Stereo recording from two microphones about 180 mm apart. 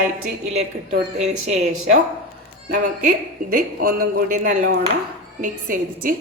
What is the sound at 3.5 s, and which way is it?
A woman's voice, 55° right (ahead or behind).